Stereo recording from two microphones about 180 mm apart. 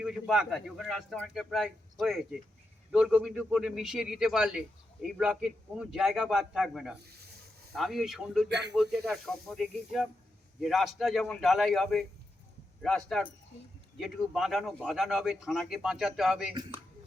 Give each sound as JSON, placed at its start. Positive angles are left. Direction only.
{"t": 0.0, "sound": "speech", "side_deg": 0}
{"t": 8.4, "sound": "speech", "side_deg": -70}
{"t": 8.7, "sound": "speech", "side_deg": 0}